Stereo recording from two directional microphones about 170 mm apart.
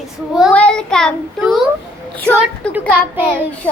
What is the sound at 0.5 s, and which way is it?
A child's voice, 5° left (ahead or behind).